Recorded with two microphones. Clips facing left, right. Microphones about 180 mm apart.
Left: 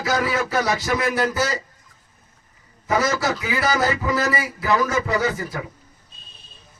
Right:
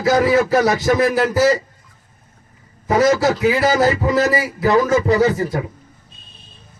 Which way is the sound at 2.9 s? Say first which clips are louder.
Right 7 dB; 25° right (ahead or behind).